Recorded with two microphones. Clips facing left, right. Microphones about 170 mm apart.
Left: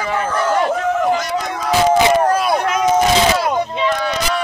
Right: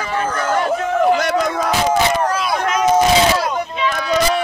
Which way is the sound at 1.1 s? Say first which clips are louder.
Right 3 dB; 60° right (ahead or behind).